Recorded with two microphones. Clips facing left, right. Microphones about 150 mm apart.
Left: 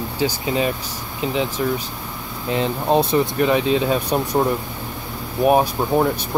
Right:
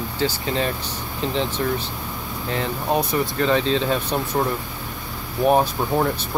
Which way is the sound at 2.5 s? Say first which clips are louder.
Left 4 dB; 20° left (ahead or behind).